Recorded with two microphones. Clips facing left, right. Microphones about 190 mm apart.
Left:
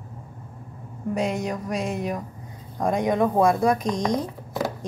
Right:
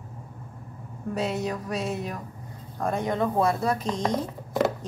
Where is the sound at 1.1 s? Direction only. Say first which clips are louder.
Left 2 dB; 15° left (ahead or behind).